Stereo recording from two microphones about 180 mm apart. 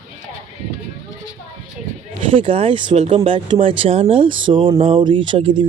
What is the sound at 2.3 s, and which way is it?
Speech, 30° right (ahead or behind).